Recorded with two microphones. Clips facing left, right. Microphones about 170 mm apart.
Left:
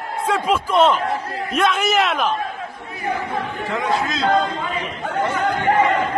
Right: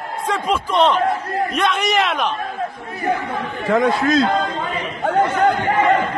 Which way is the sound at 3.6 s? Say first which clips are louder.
Right 7 dB; 45° right (ahead or behind).